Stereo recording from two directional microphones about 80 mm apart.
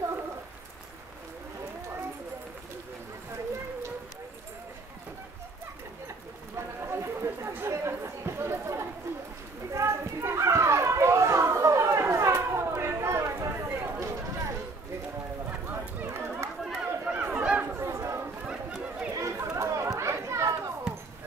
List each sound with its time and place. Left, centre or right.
6.5 s chatter: right
9.7 s children playing: right
16.1 s chatter: right
17.0 s a sound: centre
17.7 s chatter: right
18.4 s a sound: centre
19.1 s chatter: right